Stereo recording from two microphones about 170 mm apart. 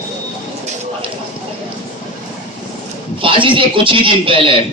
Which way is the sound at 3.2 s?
30° right (ahead or behind).